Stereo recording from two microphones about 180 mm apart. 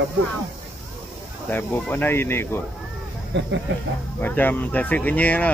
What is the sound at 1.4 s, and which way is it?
Speech, 10° left (ahead or behind).